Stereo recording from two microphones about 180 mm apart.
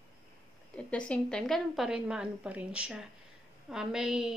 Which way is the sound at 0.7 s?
5° left (ahead or behind).